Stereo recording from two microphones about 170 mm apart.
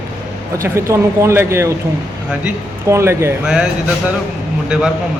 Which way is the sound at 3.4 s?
5° right (ahead or behind).